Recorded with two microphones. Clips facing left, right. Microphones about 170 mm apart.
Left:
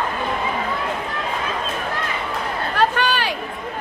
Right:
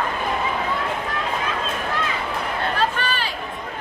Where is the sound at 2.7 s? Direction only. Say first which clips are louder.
Left 8 dB; 65° left (ahead or behind).